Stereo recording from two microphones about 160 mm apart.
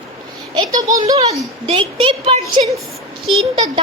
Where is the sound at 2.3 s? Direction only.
35° right (ahead or behind).